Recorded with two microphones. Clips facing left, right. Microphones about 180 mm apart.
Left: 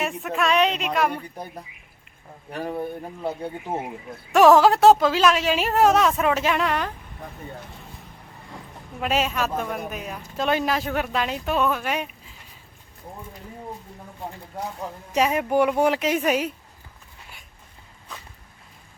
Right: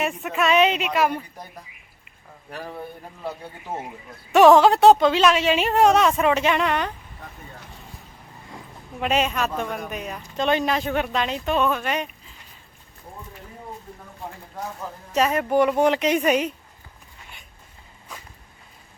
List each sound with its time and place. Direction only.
0.0 s speech: centre (ahead or behind)
3.2 s speech: 15° left (ahead or behind)
4.3 s speech: centre (ahead or behind)
9.0 s speech: centre (ahead or behind)
15.1 s speech: 10° left (ahead or behind)